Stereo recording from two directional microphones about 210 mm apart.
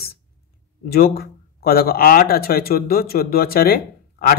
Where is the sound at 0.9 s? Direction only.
45° left (ahead or behind).